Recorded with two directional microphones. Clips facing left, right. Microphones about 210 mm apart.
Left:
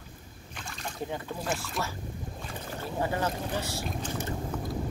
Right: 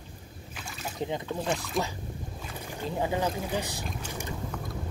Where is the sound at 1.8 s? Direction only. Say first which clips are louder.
Right 7 dB; centre (ahead or behind).